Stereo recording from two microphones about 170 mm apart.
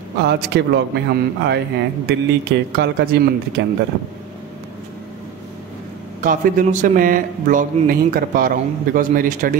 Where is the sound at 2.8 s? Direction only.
80° right.